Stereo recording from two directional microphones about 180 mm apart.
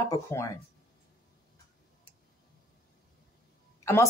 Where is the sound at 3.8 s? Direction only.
15° left (ahead or behind).